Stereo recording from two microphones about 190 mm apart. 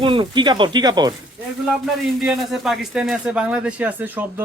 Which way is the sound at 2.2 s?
Centre (ahead or behind).